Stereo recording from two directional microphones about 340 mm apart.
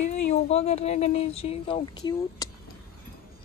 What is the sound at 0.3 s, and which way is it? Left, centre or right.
Speech, centre.